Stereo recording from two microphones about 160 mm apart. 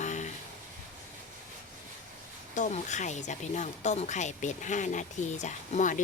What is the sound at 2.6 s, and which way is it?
Speech, 50° left (ahead or behind).